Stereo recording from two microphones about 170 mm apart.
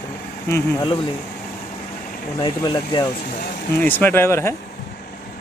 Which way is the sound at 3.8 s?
10° left (ahead or behind).